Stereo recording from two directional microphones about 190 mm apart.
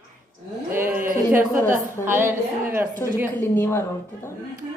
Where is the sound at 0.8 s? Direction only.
10° right (ahead or behind).